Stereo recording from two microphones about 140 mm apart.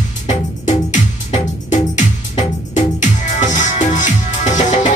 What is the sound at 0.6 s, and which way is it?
Music, 60° left (ahead or behind).